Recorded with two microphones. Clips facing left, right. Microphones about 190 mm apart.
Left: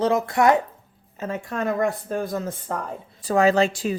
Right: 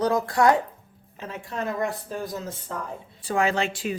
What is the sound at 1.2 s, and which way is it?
Speech, 50° left (ahead or behind).